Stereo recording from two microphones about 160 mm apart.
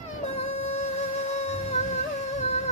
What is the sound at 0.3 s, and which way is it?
Music, 40° left (ahead or behind).